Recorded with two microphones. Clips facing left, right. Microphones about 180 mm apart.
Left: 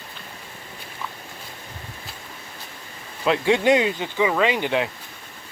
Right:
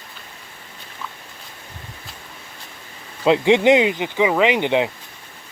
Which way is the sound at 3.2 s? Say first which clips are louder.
Right 5 dB; 20° right (ahead or behind).